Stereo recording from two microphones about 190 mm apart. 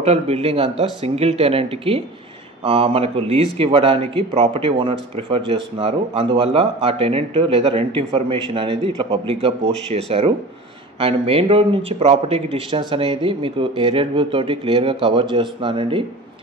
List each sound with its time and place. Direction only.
0.0 s a man's voice: 35° right (ahead or behind)